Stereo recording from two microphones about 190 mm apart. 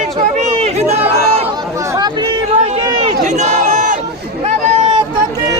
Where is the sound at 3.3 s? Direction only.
40° right (ahead or behind).